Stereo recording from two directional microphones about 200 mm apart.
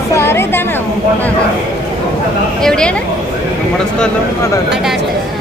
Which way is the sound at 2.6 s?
5° left (ahead or behind).